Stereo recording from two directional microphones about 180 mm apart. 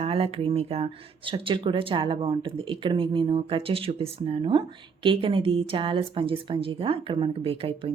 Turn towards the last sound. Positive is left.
turn(degrees=-30)  # may be behind; listen again after turning